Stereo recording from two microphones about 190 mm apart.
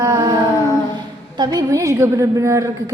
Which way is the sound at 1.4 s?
20° right (ahead or behind).